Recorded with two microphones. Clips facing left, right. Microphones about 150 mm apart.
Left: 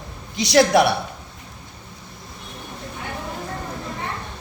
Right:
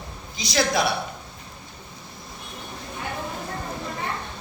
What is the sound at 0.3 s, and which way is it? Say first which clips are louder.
Speech: left 8 dB; 70° left (ahead or behind).